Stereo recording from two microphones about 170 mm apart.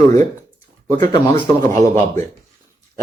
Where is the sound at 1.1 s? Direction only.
25° left (ahead or behind).